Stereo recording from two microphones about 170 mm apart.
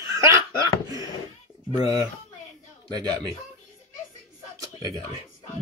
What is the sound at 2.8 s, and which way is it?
Speech, 25° right (ahead or behind).